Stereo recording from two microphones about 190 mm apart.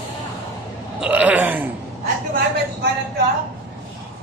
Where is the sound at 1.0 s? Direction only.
10° right (ahead or behind).